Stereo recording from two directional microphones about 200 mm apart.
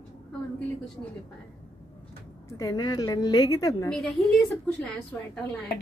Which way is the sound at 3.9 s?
5° left (ahead or behind).